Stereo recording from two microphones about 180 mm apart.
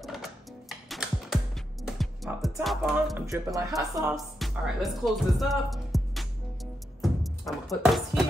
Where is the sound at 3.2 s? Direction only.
20° right (ahead or behind).